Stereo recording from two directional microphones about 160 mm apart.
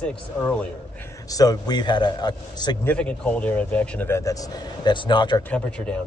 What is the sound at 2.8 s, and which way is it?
Speech, 10° left (ahead or behind).